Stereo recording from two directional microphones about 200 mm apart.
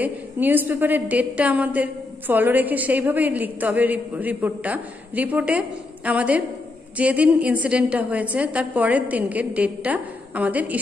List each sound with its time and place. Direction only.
0.0 s a woman's voice: 10° right (ahead or behind)